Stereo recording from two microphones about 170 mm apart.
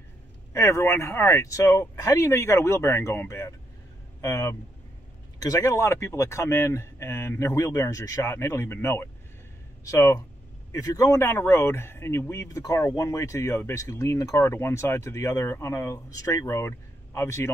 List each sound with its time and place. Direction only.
0.5 s speech: 15° left (ahead or behind)